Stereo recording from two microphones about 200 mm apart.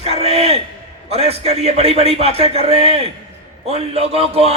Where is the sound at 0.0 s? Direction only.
30° right (ahead or behind).